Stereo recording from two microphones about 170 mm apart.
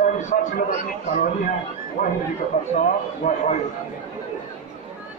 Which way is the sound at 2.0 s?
55° left (ahead or behind).